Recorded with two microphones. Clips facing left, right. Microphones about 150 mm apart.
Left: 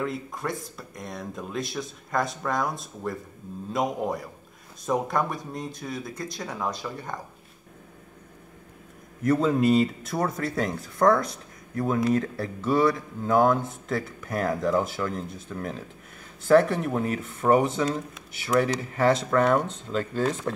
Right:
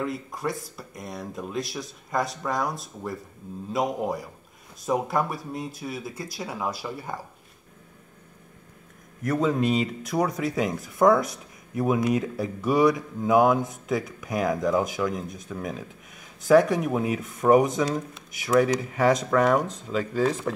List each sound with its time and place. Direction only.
0.0 s speech: centre (ahead or behind)
9.2 s speech: centre (ahead or behind)
11.7 s speech: 15° right (ahead or behind)
14.3 s speech: centre (ahead or behind); by 15.5 s 15° right (ahead or behind)
15.5 s speech: 5° right (ahead or behind)